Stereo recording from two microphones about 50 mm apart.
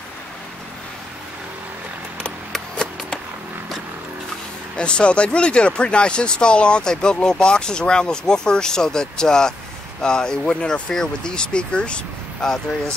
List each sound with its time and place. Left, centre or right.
4.7 s speech: left